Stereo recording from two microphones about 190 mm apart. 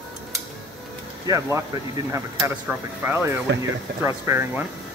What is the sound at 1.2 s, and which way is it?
Speech, 20° right (ahead or behind).